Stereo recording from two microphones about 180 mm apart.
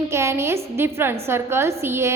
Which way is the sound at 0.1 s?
15° right (ahead or behind).